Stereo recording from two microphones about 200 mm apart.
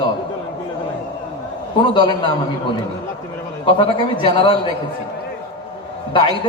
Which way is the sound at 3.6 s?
25° left (ahead or behind).